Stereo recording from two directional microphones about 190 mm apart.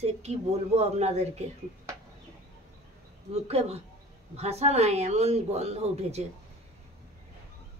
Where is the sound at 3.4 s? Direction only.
30° right (ahead or behind).